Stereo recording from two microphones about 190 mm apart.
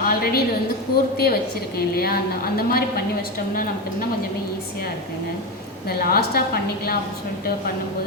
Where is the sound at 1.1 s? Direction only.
55° left (ahead or behind).